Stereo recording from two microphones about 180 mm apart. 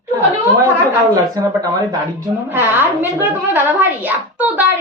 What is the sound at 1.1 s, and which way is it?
A woman's voice, 20° right (ahead or behind).